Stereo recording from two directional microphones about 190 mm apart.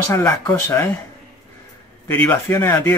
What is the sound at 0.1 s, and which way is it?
Speech, 15° left (ahead or behind).